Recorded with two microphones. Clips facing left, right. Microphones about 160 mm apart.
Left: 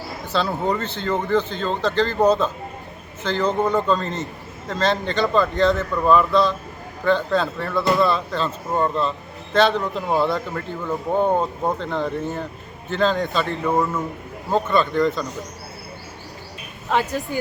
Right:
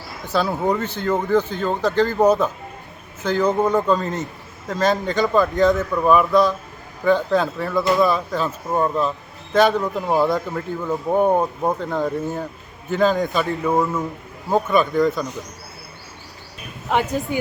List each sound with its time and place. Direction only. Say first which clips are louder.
0.3 s speech: right 2 dB; 10° right (ahead or behind)